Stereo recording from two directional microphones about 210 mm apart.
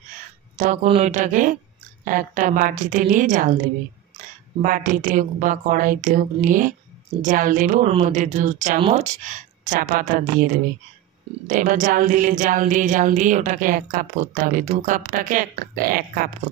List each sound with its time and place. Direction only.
0.8 s speech: 30° right (ahead or behind)
4.6 s speech: 40° right (ahead or behind)